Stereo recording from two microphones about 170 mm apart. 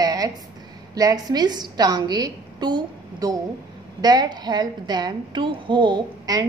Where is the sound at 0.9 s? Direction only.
20° right (ahead or behind).